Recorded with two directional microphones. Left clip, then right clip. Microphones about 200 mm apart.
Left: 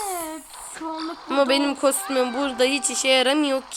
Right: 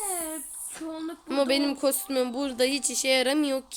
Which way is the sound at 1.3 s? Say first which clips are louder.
Left 5 dB; 10° right (ahead or behind).